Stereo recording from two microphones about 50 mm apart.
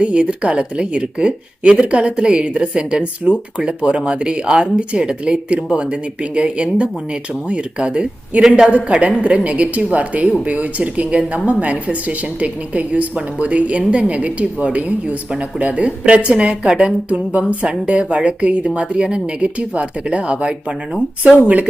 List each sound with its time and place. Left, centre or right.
0.0 s speech: right
8.4 s a woman's voice: centre
9.0 s speech: right